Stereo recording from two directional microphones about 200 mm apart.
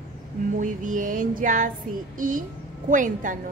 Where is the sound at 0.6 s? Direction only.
40° right (ahead or behind).